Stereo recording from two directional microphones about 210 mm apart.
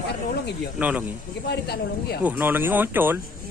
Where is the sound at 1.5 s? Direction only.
50° left (ahead or behind).